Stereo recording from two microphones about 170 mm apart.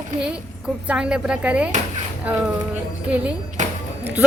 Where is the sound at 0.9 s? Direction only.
5° right (ahead or behind).